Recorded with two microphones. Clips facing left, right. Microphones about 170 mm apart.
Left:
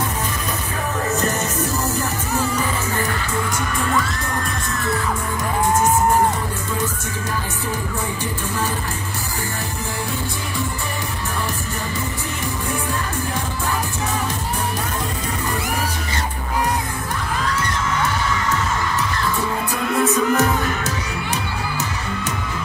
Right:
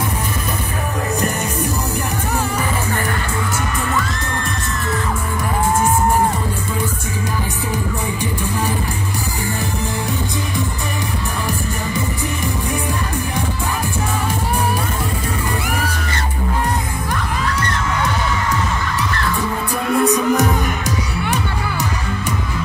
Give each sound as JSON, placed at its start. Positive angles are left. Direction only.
{"t": 20.1, "sound": "music", "side_deg": -15}